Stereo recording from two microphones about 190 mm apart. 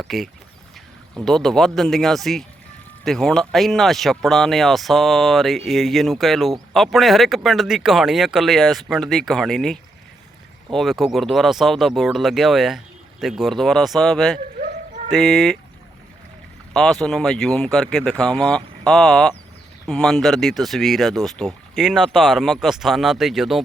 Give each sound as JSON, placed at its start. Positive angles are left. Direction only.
{"t": 0.0, "sound": "speech", "side_deg": 0}
{"t": 14.6, "sound": "a sound", "side_deg": -40}
{"t": 15.2, "sound": "speech", "side_deg": 0}
{"t": 16.7, "sound": "speech", "side_deg": 0}